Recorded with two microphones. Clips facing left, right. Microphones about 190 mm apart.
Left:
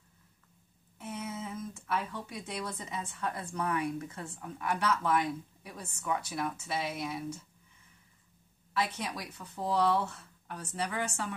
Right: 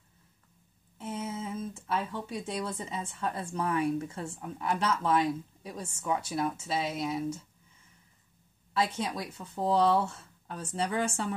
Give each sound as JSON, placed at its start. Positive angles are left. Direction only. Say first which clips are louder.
{"t": 0.9, "sound": "speech", "louder": "right 3 dB", "side_deg": -25}
{"t": 8.7, "sound": "speech", "louder": "right 4 dB", "side_deg": -25}